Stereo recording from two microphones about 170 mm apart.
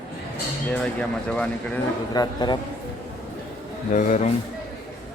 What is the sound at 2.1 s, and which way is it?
Speech, 25° left (ahead or behind).